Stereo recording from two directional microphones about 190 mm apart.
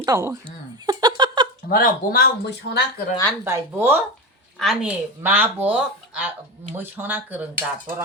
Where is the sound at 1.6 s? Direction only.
50° left (ahead or behind).